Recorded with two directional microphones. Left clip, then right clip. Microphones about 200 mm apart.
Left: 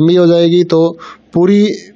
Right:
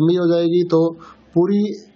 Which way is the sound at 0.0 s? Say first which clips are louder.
Left 8 dB; 40° left (ahead or behind).